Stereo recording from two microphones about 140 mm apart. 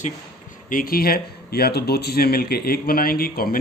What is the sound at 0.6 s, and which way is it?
Speech, 85° left.